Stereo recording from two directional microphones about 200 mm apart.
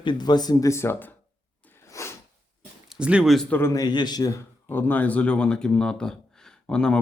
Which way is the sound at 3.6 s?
15° left (ahead or behind).